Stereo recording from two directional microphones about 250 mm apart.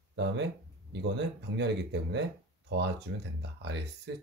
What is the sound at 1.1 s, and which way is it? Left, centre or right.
Speech, right.